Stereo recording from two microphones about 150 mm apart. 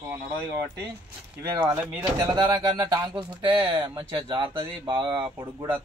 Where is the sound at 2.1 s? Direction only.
30° right (ahead or behind).